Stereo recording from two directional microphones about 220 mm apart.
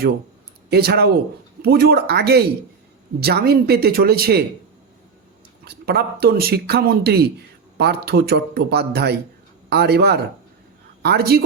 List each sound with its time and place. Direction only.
0.7 s speech: 45° right (ahead or behind)
5.6 s speech: 45° right (ahead or behind)